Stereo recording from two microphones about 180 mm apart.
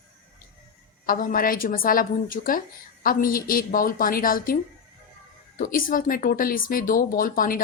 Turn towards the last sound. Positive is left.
turn(degrees=50)  # may be behind; listen again after turning